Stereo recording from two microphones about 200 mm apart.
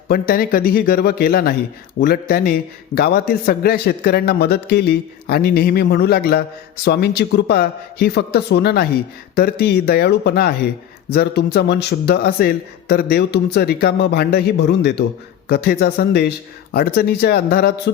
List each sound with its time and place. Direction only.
0.1 s a man's voice: 45° left (ahead or behind)